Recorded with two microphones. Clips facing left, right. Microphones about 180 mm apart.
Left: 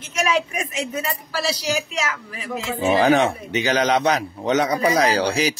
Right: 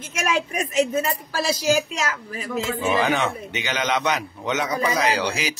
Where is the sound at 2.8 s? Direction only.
35° left (ahead or behind).